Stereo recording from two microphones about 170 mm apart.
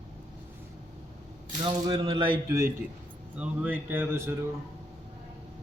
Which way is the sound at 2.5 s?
15° right (ahead or behind).